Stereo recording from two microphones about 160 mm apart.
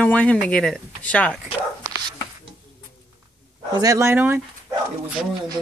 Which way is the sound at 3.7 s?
20° right (ahead or behind).